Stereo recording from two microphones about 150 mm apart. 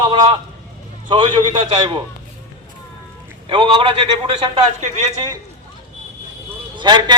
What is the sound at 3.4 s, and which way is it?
A man's voice, 35° right (ahead or behind).